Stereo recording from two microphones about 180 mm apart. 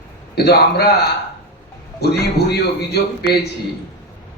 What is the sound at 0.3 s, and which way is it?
Speech, 65° left (ahead or behind).